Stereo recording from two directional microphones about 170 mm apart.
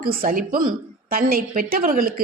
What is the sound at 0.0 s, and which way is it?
A woman's voice, 60° right (ahead or behind).